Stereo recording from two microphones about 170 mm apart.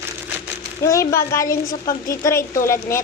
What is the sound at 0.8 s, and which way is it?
A woman's voice, 20° left (ahead or behind).